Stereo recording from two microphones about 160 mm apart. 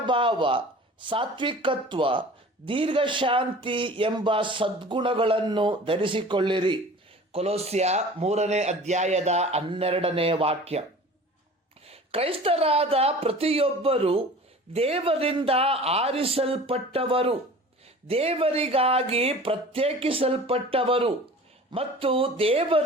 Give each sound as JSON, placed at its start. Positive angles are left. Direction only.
{"t": 0.0, "sound": "speech", "side_deg": -30}
{"t": 11.9, "sound": "speech", "side_deg": -35}